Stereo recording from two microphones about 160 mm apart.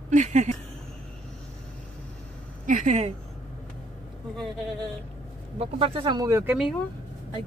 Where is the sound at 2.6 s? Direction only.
50° right (ahead or behind).